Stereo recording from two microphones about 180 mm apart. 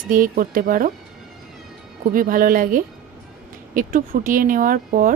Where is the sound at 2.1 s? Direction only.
50° right (ahead or behind).